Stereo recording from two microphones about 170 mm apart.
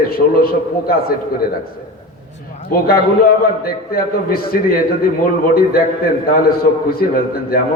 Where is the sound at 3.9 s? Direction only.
60° left (ahead or behind).